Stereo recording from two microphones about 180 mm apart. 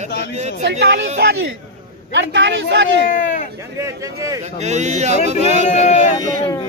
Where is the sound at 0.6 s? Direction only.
70° right (ahead or behind).